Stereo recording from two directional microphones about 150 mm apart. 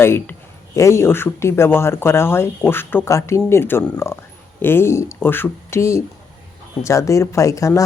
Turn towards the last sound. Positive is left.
turn(degrees=20)  # may be behind; listen again after turning